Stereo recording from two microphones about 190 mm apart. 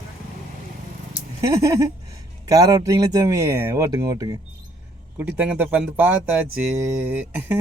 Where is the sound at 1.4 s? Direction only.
15° right (ahead or behind).